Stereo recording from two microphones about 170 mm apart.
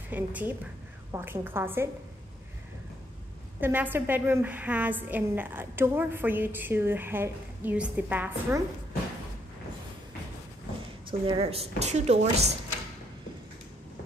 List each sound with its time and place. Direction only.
0.1 s a woman's voice: 10° right (ahead or behind)
3.6 s a woman's voice: 10° right (ahead or behind)
11.1 s speech: 30° right (ahead or behind)